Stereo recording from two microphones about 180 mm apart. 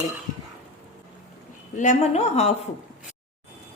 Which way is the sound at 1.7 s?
45° left (ahead or behind).